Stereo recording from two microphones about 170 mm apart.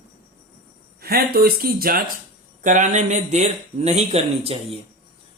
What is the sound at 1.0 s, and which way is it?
Speech, 65° right (ahead or behind).